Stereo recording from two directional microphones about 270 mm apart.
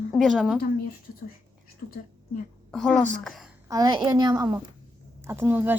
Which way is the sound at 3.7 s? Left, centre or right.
Centre.